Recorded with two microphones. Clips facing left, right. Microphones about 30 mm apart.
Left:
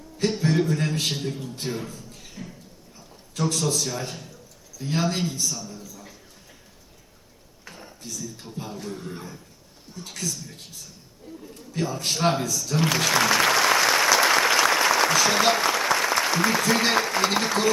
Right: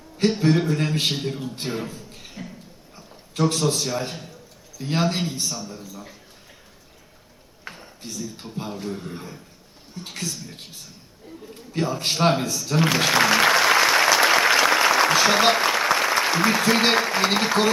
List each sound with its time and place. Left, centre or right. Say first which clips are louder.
0.3 s a man's voice: right 3 dB; right
7.6 s speech: right 3 dB; right
9.9 s a man's voice: right 1 dB; right
11.5 s a sound: right 3 dB; right
15.1 s speech: right 3 dB; right